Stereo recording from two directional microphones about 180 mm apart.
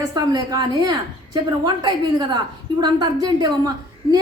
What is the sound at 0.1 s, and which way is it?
A woman's voice, 20° right (ahead or behind).